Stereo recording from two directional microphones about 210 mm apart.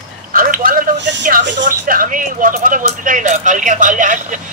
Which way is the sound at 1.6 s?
40° right (ahead or behind).